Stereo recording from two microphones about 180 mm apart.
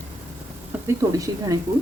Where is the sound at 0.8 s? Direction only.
20° right (ahead or behind).